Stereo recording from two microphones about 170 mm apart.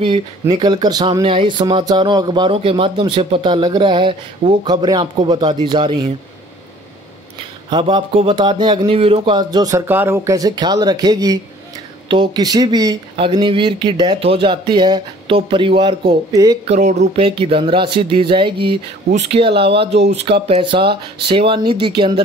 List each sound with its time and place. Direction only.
0.0 s speech: 30° right (ahead or behind)
7.7 s speech: 30° right (ahead or behind)
16.3 s speech: 20° right (ahead or behind)
16.6 s speech: 40° right (ahead or behind)
19.0 s speech: 45° right (ahead or behind)
19.4 s speech: 30° right (ahead or behind)
19.9 s speech: 85° right
20.2 s speech: 35° right (ahead or behind)